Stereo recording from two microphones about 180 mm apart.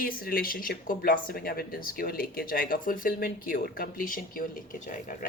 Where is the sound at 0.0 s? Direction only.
55° left (ahead or behind).